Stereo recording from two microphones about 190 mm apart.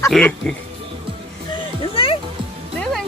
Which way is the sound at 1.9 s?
30° left (ahead or behind).